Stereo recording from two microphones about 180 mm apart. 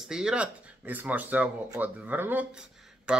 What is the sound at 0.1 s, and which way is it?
Speech, 5° right (ahead or behind).